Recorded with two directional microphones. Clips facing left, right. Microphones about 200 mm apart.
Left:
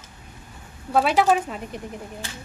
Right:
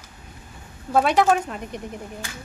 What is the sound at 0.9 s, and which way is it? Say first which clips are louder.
Speech: right 1 dB; centre (ahead or behind).